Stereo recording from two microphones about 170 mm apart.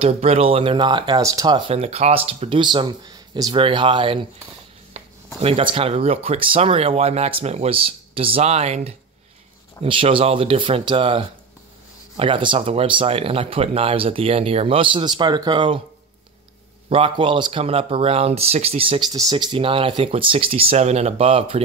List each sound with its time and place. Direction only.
0.0 s speech: 35° right (ahead or behind); by 1.6 s 20° right (ahead or behind)
1.7 s speech: 35° right (ahead or behind)
16.9 s speech: 30° right (ahead or behind)